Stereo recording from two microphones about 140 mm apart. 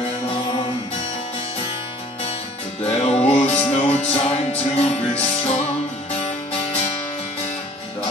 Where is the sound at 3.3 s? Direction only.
50° left (ahead or behind).